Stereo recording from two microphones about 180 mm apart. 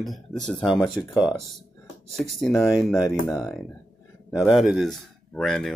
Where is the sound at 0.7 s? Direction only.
20° left (ahead or behind).